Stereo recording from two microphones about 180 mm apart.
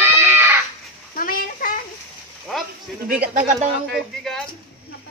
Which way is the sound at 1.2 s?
55° left (ahead or behind).